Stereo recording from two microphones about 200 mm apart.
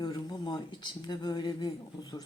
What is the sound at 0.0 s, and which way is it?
Speech, 20° left (ahead or behind).